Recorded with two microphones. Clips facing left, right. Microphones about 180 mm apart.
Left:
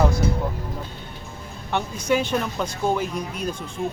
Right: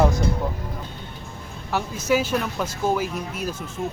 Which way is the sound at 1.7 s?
5° right (ahead or behind).